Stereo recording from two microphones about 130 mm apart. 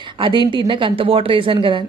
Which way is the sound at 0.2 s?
40° right (ahead or behind).